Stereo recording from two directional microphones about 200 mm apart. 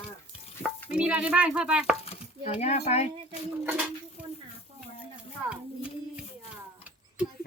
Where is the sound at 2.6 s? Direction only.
35° left (ahead or behind).